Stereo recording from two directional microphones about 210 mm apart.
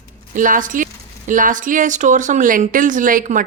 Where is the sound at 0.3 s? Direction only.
40° right (ahead or behind).